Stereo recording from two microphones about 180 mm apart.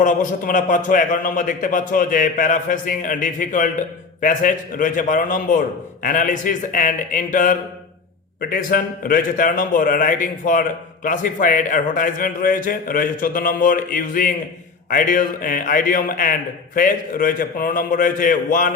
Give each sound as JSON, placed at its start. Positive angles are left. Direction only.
{"t": 0.0, "sound": "a man's voice", "side_deg": 45}